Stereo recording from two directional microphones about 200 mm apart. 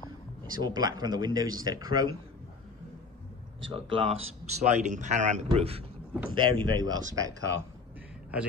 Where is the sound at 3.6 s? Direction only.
25° right (ahead or behind).